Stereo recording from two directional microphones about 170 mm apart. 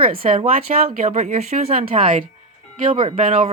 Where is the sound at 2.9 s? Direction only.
30° right (ahead or behind).